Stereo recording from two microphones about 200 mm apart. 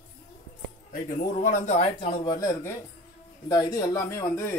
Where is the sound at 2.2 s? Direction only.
20° left (ahead or behind).